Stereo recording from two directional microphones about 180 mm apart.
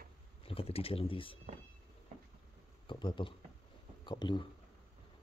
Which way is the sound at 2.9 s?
25° left (ahead or behind).